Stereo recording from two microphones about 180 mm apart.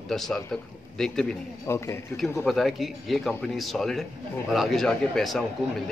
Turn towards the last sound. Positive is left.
turn(degrees=0)  # may be behind; listen again after turning